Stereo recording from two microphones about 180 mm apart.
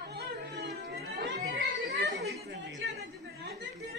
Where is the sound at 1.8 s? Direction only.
65° right (ahead or behind).